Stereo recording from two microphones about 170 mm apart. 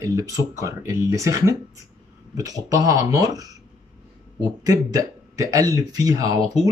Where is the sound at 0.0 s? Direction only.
20° right (ahead or behind).